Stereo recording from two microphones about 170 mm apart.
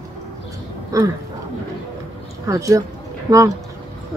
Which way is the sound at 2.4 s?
20° right (ahead or behind).